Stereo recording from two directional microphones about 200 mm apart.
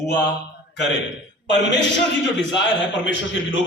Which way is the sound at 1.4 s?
60° left (ahead or behind).